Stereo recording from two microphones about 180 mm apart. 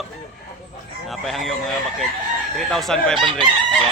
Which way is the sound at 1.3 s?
Centre (ahead or behind).